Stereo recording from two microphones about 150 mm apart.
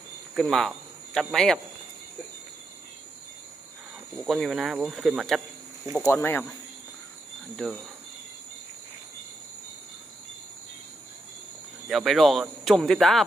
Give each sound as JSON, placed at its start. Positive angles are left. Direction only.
{"t": 0.3, "sound": "speech", "side_deg": 0}
{"t": 4.1, "sound": "speech", "side_deg": 0}
{"t": 6.1, "sound": "speech", "side_deg": 15}
{"t": 7.5, "sound": "speech", "side_deg": 0}
{"t": 11.9, "sound": "speech", "side_deg": 0}